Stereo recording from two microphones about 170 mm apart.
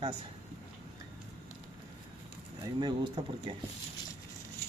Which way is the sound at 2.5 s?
25° right (ahead or behind).